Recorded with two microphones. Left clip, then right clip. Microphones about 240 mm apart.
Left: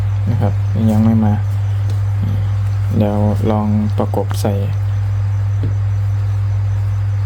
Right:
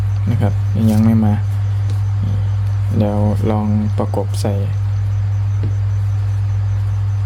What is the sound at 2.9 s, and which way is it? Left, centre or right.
Speech, centre.